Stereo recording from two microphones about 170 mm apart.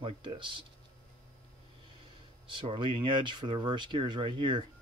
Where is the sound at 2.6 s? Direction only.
30° right (ahead or behind).